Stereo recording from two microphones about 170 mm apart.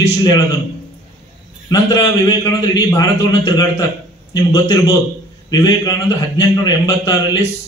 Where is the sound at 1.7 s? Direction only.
20° left (ahead or behind).